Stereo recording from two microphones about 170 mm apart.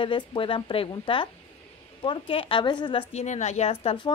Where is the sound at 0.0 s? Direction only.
30° left (ahead or behind).